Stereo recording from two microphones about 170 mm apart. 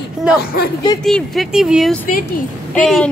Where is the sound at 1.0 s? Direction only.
Centre (ahead or behind).